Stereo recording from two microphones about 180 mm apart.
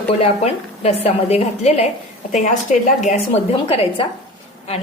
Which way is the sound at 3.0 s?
40° left (ahead or behind).